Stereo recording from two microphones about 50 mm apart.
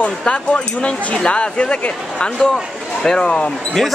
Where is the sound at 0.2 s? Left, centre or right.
Centre.